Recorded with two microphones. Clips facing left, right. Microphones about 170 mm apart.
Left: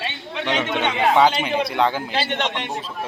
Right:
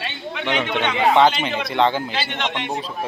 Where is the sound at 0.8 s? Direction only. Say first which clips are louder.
Right 1 dB; 10° left (ahead or behind).